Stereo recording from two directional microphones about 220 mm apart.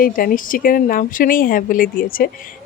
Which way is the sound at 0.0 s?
40° left (ahead or behind).